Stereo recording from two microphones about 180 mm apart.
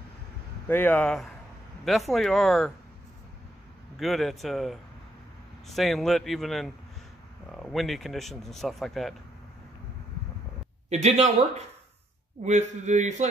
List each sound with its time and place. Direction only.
0.7 s speech: 10° left (ahead or behind)
4.0 s speech: centre (ahead or behind)
10.9 s a man's voice: 35° right (ahead or behind)
12.4 s a man's voice: 40° right (ahead or behind)